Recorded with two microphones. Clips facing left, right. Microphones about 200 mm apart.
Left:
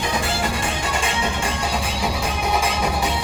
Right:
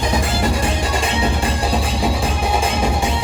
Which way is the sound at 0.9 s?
35° right (ahead or behind).